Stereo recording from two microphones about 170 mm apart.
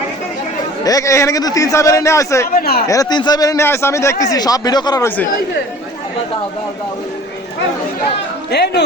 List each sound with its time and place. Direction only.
0.9 s a man's voice: 20° left (ahead or behind)
2.6 s speech: 65° left (ahead or behind)
2.8 s a man's voice: 20° left (ahead or behind)
8.4 s speech: 75° left (ahead or behind)